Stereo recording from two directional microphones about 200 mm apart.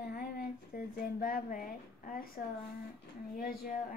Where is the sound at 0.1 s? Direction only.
45° left (ahead or behind).